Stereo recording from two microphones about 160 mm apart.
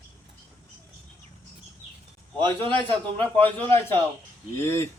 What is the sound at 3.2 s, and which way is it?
Speech, 10° left (ahead or behind).